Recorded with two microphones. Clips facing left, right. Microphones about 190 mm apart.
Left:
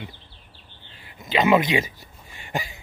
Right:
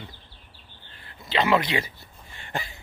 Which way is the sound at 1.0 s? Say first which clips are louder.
Left 4 dB; 15° left (ahead or behind).